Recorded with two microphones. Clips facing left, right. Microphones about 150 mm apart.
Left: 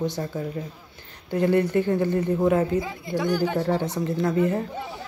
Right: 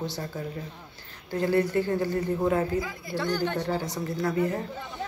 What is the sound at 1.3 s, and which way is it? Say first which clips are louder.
Speech: left 3 dB; 20° left (ahead or behind).